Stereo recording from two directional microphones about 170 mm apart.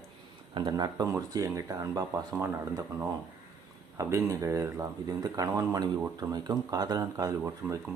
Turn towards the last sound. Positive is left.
turn(degrees=-20)  # may be behind; listen again after turning